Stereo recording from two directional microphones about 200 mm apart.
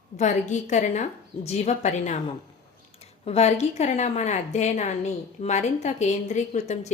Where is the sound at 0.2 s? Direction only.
35° left (ahead or behind).